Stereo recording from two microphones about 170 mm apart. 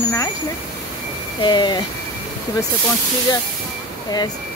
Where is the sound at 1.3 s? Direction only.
25° left (ahead or behind).